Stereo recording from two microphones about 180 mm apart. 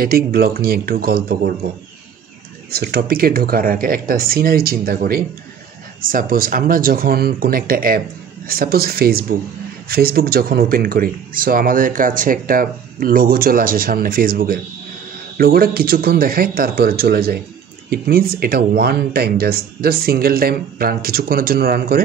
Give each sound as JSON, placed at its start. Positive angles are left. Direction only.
{"t": 0.0, "sound": "speech", "side_deg": -55}
{"t": 2.7, "sound": "speech", "side_deg": -60}